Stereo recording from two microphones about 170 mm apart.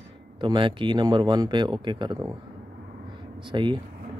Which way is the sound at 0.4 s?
30° right (ahead or behind).